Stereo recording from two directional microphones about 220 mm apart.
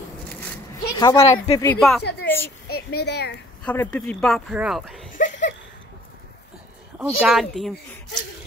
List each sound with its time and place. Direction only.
0.9 s speech: 20° left (ahead or behind)
1.8 s speech: centre (ahead or behind)
2.7 s speech: 45° left (ahead or behind)
3.6 s speech: 5° left (ahead or behind)
5.1 s a sound: 35° left (ahead or behind)
7.0 s speech: centre (ahead or behind)